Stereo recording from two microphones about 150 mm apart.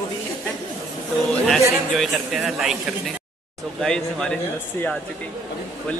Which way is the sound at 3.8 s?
5° left (ahead or behind).